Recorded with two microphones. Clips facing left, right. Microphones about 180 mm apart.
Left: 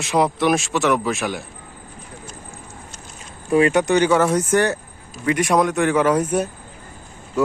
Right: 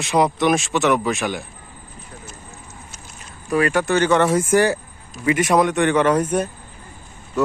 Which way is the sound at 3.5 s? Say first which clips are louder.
Left 3 dB; 25° left (ahead or behind).